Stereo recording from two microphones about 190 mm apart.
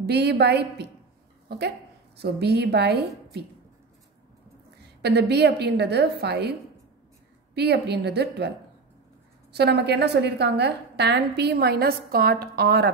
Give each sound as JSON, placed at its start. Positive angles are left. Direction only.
{"t": 0.0, "sound": "a woman's voice", "side_deg": -60}
{"t": 5.0, "sound": "a woman's voice", "side_deg": -60}
{"t": 7.5, "sound": "a woman's voice", "side_deg": -60}
{"t": 9.5, "sound": "a woman's voice", "side_deg": -60}